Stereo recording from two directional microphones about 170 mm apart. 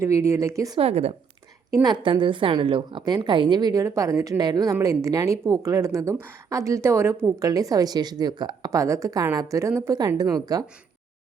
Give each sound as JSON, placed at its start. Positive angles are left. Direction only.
{"t": 0.0, "sound": "a woman's voice", "side_deg": -15}
{"t": 0.8, "sound": "speech", "side_deg": -40}
{"t": 1.8, "sound": "a woman's voice", "side_deg": -25}